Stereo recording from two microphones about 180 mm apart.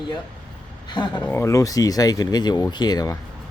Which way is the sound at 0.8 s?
25° left (ahead or behind).